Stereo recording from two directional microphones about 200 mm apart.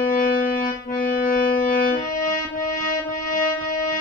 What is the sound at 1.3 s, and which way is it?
Music, 40° left (ahead or behind).